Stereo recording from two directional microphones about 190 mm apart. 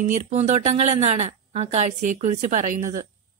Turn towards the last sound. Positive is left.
turn(degrees=-40)  # may be behind; listen again after turning